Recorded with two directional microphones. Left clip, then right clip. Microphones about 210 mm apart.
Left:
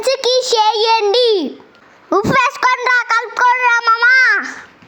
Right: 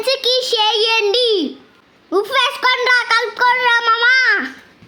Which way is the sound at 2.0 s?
30° left (ahead or behind).